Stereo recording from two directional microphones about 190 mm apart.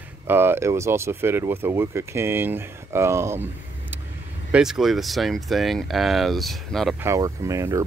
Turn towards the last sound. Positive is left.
turn(degrees=-15)  # may be behind; listen again after turning